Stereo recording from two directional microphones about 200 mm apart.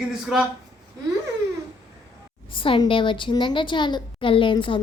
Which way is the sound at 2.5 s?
25° left (ahead or behind).